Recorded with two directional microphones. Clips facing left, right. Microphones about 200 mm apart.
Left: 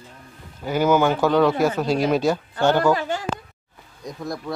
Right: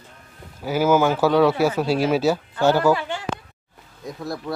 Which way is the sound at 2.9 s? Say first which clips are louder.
Left 3 dB; 40° left (ahead or behind).